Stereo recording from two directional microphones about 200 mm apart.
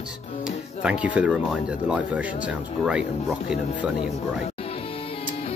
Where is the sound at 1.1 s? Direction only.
5° right (ahead or behind).